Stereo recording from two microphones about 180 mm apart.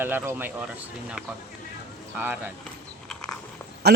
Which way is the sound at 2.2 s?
10° right (ahead or behind).